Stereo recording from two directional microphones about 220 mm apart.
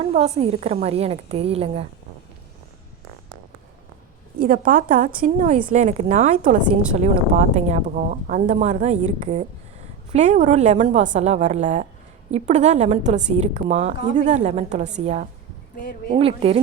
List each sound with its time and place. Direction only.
0.0 s a woman's voice: 30° right (ahead or behind)
4.4 s a woman's voice: 40° right (ahead or behind)